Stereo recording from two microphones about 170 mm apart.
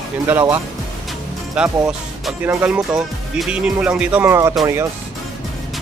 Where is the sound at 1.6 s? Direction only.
5° right (ahead or behind).